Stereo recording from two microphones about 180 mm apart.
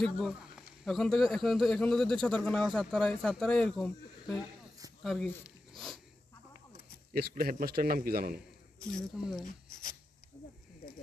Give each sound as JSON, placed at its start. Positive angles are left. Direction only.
{"t": 0.0, "sound": "speech", "side_deg": 0}
{"t": 7.1, "sound": "a man's voice", "side_deg": -55}
{"t": 8.8, "sound": "speech", "side_deg": 0}